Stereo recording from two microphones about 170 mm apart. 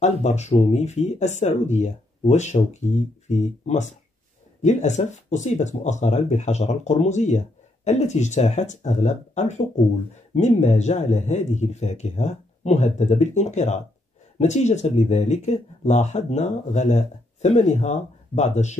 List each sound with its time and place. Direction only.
0.0 s speech: 40° left (ahead or behind)